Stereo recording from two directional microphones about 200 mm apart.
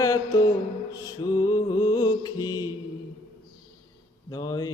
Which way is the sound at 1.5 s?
20° left (ahead or behind).